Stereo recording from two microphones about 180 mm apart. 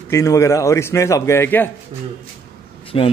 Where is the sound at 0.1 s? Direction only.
15° left (ahead or behind).